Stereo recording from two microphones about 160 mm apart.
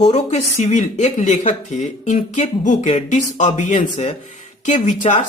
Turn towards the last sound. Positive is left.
turn(degrees=50)  # may be behind; listen again after turning